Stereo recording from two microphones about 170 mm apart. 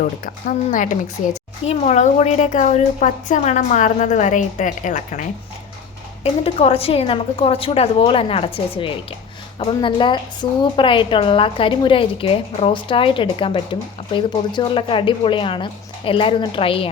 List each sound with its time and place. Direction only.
0.4 s a woman's voice: 50° left (ahead or behind)
6.2 s a woman's voice: 35° left (ahead or behind)